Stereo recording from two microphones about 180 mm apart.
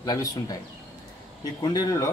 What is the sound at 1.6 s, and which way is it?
Speech, 20° left (ahead or behind).